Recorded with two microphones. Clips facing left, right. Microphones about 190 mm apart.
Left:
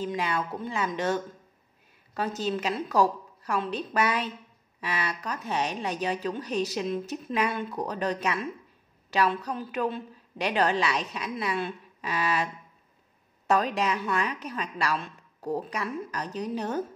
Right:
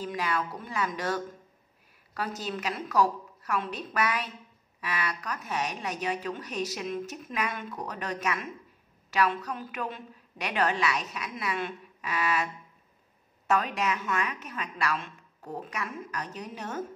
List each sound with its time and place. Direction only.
0.0 s a woman's voice: 25° left (ahead or behind)
13.5 s a woman's voice: 35° left (ahead or behind)